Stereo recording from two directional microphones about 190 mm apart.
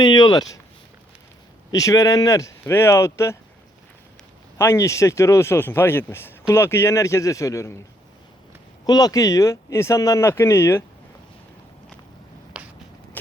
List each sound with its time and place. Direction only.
0.0 s speech: 20° left (ahead or behind)
1.7 s speech: 15° left (ahead or behind)
4.5 s speech: 15° left (ahead or behind)
8.9 s speech: 20° left (ahead or behind)
12.5 s a sound: 5° right (ahead or behind)